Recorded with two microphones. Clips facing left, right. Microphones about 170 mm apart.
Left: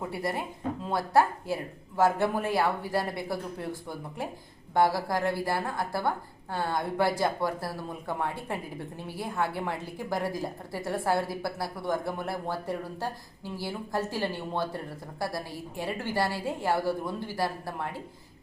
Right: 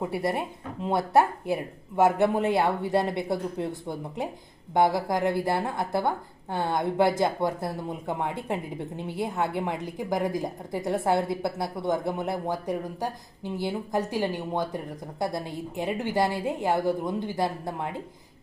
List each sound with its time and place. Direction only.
0.0 s a woman's voice: 25° right (ahead or behind)